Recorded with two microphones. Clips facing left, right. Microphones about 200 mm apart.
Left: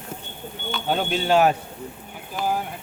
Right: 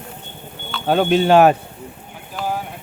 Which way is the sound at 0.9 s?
65° right (ahead or behind).